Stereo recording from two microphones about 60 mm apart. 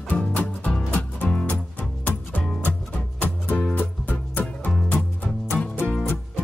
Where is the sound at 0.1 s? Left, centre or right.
Left.